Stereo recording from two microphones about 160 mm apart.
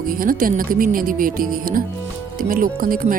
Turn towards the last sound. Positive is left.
turn(degrees=-60)  # may be behind; listen again after turning